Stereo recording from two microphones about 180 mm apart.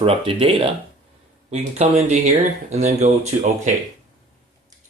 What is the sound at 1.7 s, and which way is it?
Speech, 40° right (ahead or behind).